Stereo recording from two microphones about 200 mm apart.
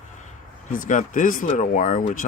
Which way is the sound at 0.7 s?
40° left (ahead or behind).